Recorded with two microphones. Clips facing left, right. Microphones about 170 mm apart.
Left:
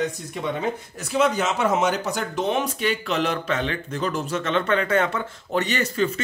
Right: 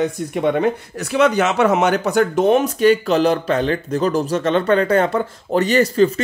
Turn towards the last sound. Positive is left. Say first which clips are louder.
# right 9 dB
turn(degrees=-35)  # may be behind; listen again after turning